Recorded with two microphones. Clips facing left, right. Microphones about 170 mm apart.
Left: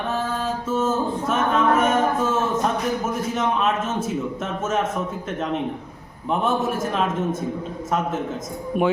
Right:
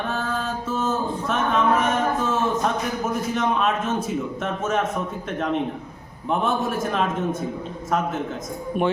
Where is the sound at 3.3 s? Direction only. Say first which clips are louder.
Even; 5° left (ahead or behind).